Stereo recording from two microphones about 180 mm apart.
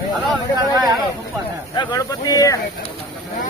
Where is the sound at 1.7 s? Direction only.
20° left (ahead or behind).